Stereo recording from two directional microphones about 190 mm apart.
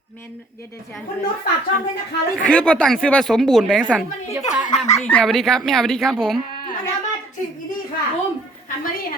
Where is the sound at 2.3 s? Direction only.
5° left (ahead or behind).